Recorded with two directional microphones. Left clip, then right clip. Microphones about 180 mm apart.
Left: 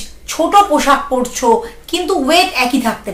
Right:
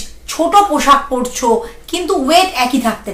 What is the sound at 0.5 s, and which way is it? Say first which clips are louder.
A woman's voice: right 1 dB; 10° left (ahead or behind).